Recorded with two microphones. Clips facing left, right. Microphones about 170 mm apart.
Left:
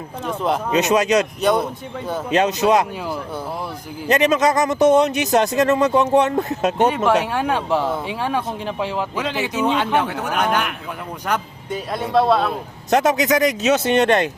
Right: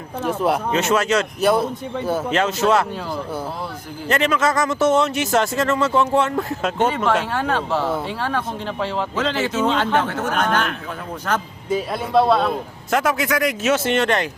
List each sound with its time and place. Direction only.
0.2 s a man's voice: 5° right (ahead or behind)
0.7 s speech: 15° left (ahead or behind)
1.4 s a man's voice: 5° right (ahead or behind)
2.3 s speech: 20° left (ahead or behind)
4.1 s speech: 15° left (ahead or behind)
11.7 s a man's voice: centre (ahead or behind)
12.9 s a man's voice: 20° left (ahead or behind)